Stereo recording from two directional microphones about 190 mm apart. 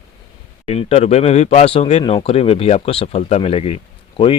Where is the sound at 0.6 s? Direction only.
35° left (ahead or behind).